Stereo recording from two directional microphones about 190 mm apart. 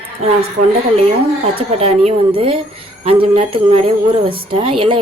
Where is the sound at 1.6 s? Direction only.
30° right (ahead or behind).